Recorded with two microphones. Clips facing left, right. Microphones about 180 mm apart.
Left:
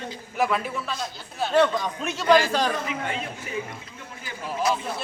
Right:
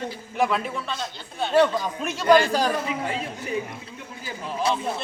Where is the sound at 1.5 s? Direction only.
5° right (ahead or behind).